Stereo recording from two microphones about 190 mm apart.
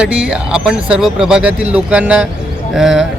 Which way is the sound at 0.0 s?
5° right (ahead or behind).